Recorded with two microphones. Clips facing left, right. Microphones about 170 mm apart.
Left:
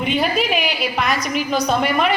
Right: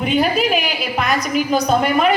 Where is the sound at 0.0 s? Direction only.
Centre (ahead or behind).